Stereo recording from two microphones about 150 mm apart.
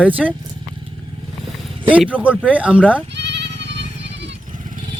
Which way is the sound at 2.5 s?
10° right (ahead or behind).